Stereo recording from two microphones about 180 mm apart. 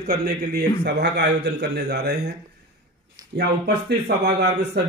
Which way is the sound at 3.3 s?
70° right (ahead or behind).